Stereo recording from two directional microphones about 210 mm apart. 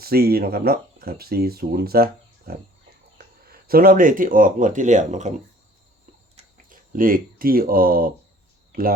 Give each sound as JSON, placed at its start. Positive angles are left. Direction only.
{"t": 0.0, "sound": "speech", "side_deg": -45}
{"t": 6.3, "sound": "a sound", "side_deg": -40}
{"t": 8.7, "sound": "speech", "side_deg": -45}